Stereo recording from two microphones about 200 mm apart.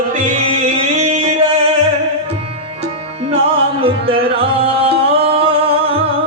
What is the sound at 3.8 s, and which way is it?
Music, 30° right (ahead or behind).